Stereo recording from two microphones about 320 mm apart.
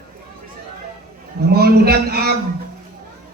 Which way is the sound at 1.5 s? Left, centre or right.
Right.